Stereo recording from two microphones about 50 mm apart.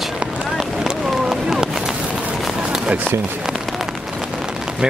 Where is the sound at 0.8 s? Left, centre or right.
Centre.